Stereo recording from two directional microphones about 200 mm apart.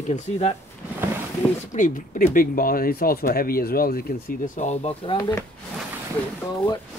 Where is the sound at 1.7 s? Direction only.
40° left (ahead or behind).